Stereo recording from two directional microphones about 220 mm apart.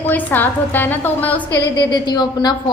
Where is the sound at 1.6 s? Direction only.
20° left (ahead or behind).